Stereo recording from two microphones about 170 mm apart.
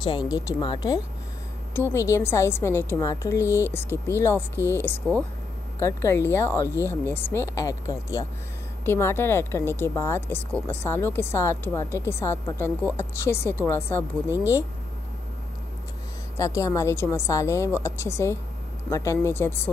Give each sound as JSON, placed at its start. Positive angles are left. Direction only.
{"t": 0.0, "sound": "a woman's voice", "side_deg": 25}
{"t": 14.3, "sound": "speech", "side_deg": -10}
{"t": 16.3, "sound": "a woman's voice", "side_deg": 20}